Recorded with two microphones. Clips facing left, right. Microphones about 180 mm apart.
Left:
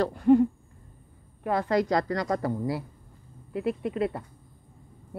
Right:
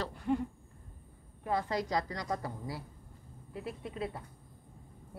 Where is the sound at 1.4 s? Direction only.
75° left (ahead or behind).